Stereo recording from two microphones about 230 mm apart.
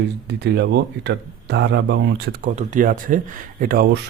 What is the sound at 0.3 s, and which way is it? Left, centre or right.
Speech, right.